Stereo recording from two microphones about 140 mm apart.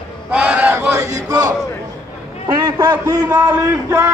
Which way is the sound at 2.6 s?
25° right (ahead or behind).